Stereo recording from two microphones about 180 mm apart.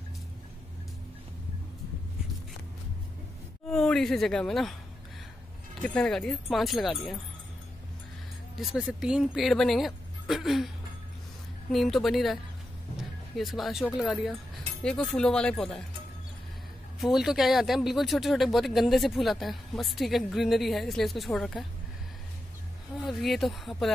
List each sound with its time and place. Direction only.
3.6 s speech: 5° left (ahead or behind)
5.8 s speech: 5° left (ahead or behind)
8.5 s speech: 5° right (ahead or behind)
11.7 s speech: centre (ahead or behind)
12.9 s music: centre (ahead or behind)
13.9 s speech: centre (ahead or behind)
17.0 s speech: centre (ahead or behind)
23.0 s speech: centre (ahead or behind)